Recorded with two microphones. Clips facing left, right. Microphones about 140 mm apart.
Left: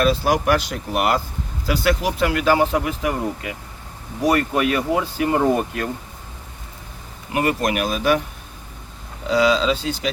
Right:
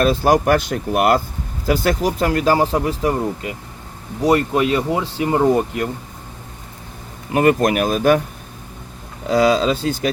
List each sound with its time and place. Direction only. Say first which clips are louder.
0.0 s speech: right 3 dB; 45° right (ahead or behind); by 5.9 s 20° right (ahead or behind)
7.3 s speech: right 6 dB; 45° right (ahead or behind)
9.3 s speech: right 2 dB; 45° right (ahead or behind)